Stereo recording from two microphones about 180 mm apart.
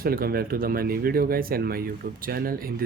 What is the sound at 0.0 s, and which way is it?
Speech, 55° right (ahead or behind).